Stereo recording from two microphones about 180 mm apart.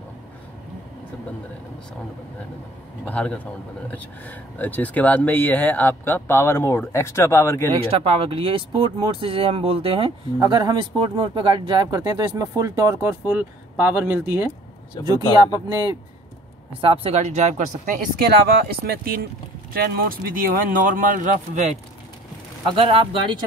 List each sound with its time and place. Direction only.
3.1 s speech: 10° left (ahead or behind)
7.7 s speech: 35° right (ahead or behind); by 14.5 s 10° right (ahead or behind)
16.8 s speech: 30° right (ahead or behind)
22.8 s speech: 30° right (ahead or behind)